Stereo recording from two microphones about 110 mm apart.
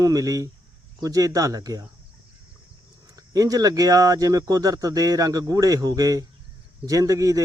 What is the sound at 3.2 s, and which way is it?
Speech, 35° right (ahead or behind).